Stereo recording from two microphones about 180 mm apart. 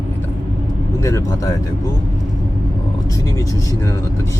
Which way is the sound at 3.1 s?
20° left (ahead or behind).